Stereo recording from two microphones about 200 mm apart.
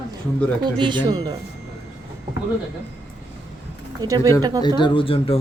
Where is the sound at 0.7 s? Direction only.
25° right (ahead or behind).